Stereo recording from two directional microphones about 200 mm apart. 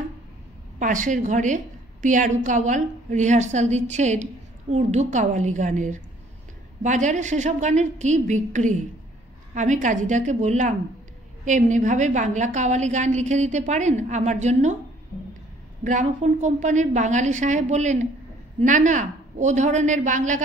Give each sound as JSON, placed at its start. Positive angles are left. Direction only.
{"t": 0.7, "sound": "a woman's voice", "side_deg": -40}
{"t": 15.8, "sound": "a woman's voice", "side_deg": -40}